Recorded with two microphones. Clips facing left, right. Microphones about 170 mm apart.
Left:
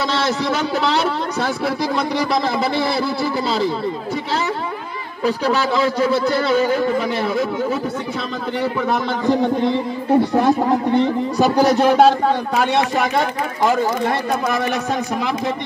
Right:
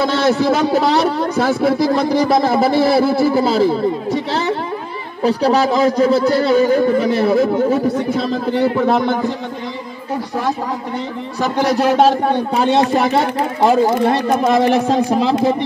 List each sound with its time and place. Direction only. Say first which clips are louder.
0.0 s a man's voice: right 5 dB; 50° right (ahead or behind)
5.2 s speech: right 4 dB; 35° right (ahead or behind)
11.3 s speech: left 1 dB; 5° left (ahead or behind)
12.5 s speech: right 4 dB; 30° right (ahead or behind)